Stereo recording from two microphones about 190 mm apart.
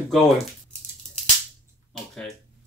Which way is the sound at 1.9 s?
Centre (ahead or behind).